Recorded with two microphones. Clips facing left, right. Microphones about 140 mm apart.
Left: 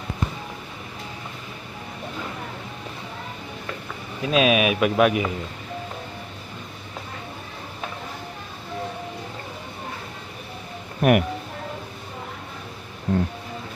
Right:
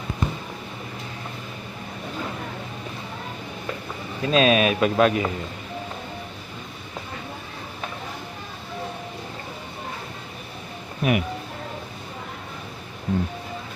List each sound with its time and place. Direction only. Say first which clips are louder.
4.2 s speech: right 1 dB; 5° left (ahead or behind)
11.0 s speech: left 5 dB; 60° left (ahead or behind)